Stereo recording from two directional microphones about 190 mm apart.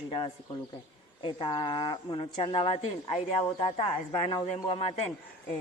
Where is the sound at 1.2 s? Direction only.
25° left (ahead or behind).